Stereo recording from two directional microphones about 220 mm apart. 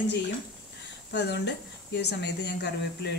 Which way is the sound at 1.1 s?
50° left (ahead or behind).